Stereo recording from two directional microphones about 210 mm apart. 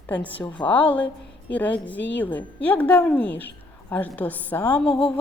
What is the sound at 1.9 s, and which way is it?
Speech, 60° left (ahead or behind).